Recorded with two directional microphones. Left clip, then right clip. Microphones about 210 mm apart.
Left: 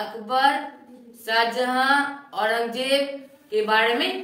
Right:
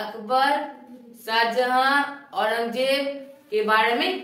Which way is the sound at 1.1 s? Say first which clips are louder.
Left 1 dB; centre (ahead or behind).